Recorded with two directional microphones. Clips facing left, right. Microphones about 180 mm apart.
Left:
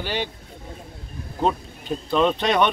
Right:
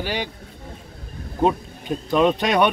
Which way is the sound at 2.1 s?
10° right (ahead or behind).